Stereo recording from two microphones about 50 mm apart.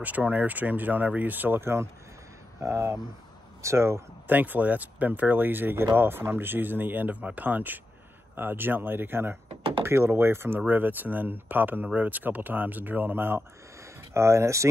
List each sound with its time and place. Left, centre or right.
0.0 s speech: right
1.6 s speech: right
4.3 s speech: right
9.8 s speech: right
10.7 s speech: right
14.1 s speech: right